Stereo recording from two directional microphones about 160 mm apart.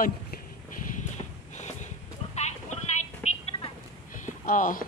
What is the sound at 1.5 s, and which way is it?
Clip-clop, 45° left (ahead or behind).